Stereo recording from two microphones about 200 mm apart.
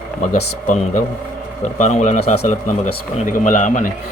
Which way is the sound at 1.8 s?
35° left (ahead or behind).